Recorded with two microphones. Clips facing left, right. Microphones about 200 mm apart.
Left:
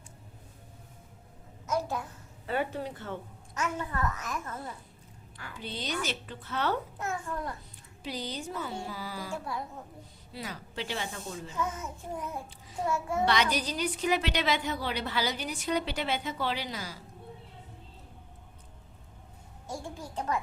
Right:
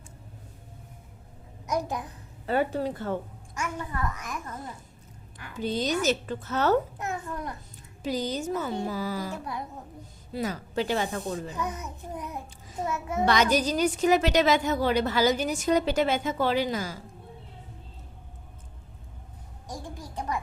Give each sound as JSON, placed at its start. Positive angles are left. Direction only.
{"t": 1.6, "sound": "a child's voice", "side_deg": -15}
{"t": 2.5, "sound": "a woman's voice", "side_deg": -40}
{"t": 3.5, "sound": "a child's voice", "side_deg": -15}
{"t": 5.5, "sound": "a woman's voice", "side_deg": -45}
{"t": 7.0, "sound": "a child's voice", "side_deg": -20}
{"t": 8.0, "sound": "a woman's voice", "side_deg": -45}
{"t": 9.3, "sound": "a child's voice", "side_deg": -20}
{"t": 10.3, "sound": "a woman's voice", "side_deg": -45}
{"t": 11.5, "sound": "a child's voice", "side_deg": -15}
{"t": 12.9, "sound": "a child's voice", "side_deg": -20}
{"t": 13.2, "sound": "a woman's voice", "side_deg": -45}
{"t": 19.6, "sound": "a child's voice", "side_deg": -15}